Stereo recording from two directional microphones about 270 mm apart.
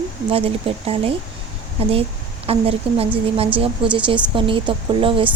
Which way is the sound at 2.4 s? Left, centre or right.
Right.